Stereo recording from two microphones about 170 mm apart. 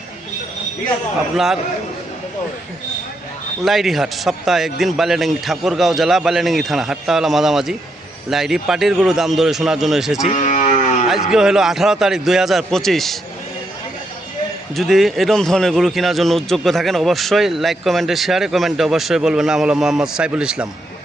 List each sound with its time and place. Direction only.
3.6 s a man's voice: centre (ahead or behind)
10.2 s sheep: 45° left (ahead or behind)
11.1 s a man's voice: 5° right (ahead or behind)
14.8 s a man's voice: centre (ahead or behind)